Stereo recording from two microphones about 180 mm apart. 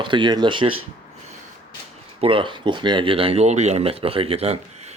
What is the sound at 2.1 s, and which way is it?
Speech, 30° right (ahead or behind).